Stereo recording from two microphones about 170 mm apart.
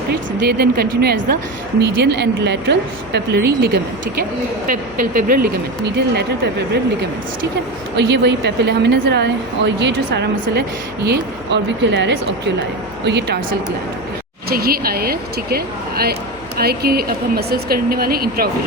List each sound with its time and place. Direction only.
0.1 s speech: 70° right (ahead or behind)
1.8 s a woman's voice: 85° right; by 3.8 s 70° right (ahead or behind)
4.2 s speech: 55° right (ahead or behind); by 6.5 s 80° right
7.9 s a woman's voice: 90° right
13.1 s a woman's voice: 80° right
14.5 s speech: 60° right (ahead or behind)